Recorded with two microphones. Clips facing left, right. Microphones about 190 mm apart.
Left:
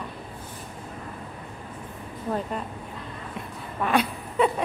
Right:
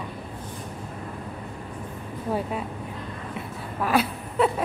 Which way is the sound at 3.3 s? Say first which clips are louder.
Right 1 dB; 5° right (ahead or behind).